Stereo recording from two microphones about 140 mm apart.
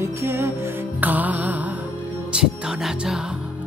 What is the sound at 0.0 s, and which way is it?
Music, 20° right (ahead or behind).